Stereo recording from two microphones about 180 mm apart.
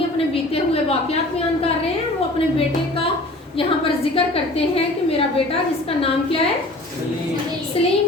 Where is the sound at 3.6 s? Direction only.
30° left (ahead or behind).